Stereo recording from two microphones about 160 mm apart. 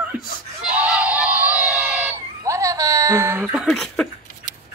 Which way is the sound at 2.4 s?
20° right (ahead or behind).